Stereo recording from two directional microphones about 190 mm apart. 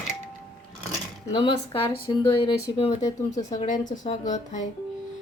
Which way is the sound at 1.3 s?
20° left (ahead or behind).